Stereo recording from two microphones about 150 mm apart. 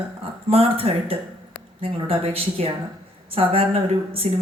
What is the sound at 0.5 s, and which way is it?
Speech, 40° right (ahead or behind).